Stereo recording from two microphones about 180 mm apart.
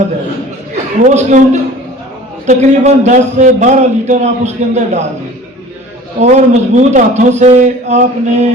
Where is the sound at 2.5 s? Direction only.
40° right (ahead or behind).